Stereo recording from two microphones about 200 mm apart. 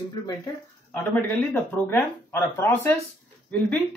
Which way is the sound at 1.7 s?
10° left (ahead or behind).